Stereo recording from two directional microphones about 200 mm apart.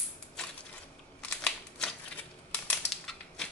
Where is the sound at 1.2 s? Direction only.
5° left (ahead or behind).